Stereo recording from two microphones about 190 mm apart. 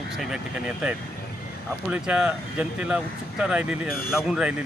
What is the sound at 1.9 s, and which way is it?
Speech, 5° right (ahead or behind).